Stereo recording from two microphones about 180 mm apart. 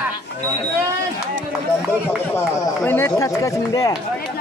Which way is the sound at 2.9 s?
10° left (ahead or behind).